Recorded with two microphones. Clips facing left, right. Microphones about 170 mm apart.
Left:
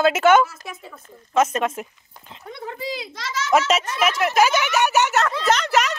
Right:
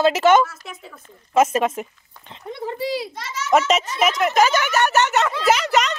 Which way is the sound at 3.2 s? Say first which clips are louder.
Left 2 dB; 90° left.